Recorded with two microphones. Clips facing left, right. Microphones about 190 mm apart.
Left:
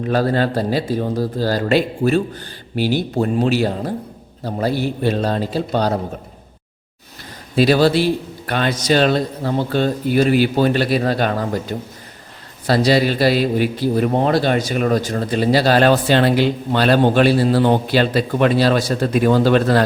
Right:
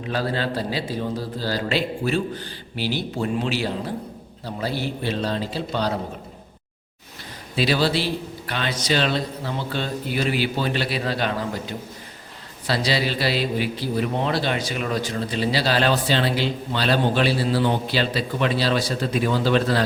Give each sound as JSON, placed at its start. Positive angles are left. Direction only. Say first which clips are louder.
{"t": 0.0, "sound": "a man's voice", "louder": "left 8 dB", "side_deg": 45}
{"t": 7.5, "sound": "a man's voice", "louder": "left 8 dB", "side_deg": 45}